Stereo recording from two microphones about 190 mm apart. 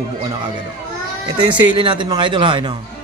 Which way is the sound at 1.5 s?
25° right (ahead or behind).